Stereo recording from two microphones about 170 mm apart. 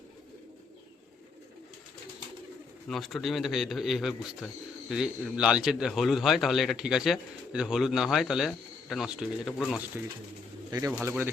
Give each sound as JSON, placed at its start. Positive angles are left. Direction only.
{"t": 2.9, "sound": "a man's voice", "side_deg": 0}
{"t": 10.7, "sound": "speech", "side_deg": -20}